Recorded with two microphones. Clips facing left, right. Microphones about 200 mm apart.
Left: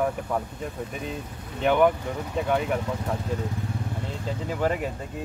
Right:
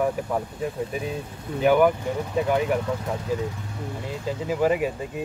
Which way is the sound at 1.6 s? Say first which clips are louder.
Right 2 dB; 5° right (ahead or behind).